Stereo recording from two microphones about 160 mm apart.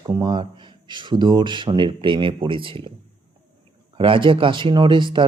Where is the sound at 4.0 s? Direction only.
30° right (ahead or behind).